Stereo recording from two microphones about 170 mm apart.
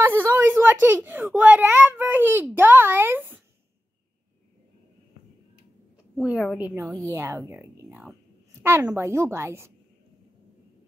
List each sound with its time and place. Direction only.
0.0 s a woman's voice: 10° right (ahead or behind)
6.2 s a woman's voice: centre (ahead or behind)
6.7 s a woman's voice: 15° right (ahead or behind)